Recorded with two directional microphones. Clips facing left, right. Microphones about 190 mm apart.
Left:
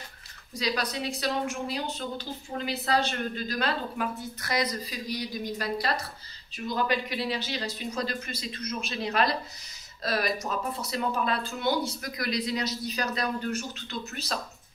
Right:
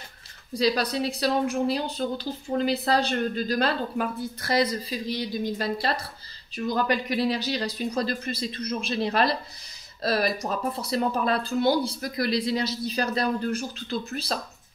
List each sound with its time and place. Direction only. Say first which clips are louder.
0.5 s a woman's voice: right 6 dB; 30° right (ahead or behind)
6.5 s speech: right 3 dB; 45° right (ahead or behind)